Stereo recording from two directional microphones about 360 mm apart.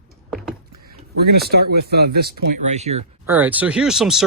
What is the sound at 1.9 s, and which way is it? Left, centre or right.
Speech, right.